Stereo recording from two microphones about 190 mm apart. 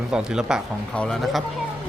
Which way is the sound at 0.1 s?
5° right (ahead or behind).